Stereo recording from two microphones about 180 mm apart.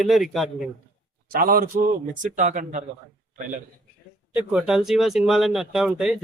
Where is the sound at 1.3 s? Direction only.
55° right (ahead or behind).